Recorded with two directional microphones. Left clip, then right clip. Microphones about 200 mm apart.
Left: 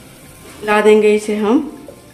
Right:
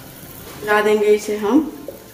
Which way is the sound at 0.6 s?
40° left (ahead or behind).